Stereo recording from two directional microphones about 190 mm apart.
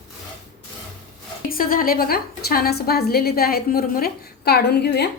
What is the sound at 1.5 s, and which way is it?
A woman's voice, 50° left (ahead or behind).